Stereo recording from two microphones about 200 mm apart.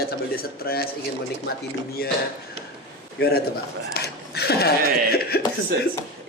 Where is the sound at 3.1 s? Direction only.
50° left (ahead or behind).